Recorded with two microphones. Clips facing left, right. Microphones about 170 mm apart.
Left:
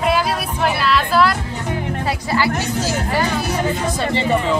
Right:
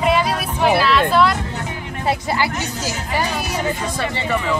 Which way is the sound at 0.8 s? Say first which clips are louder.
Left 1 dB; centre (ahead or behind).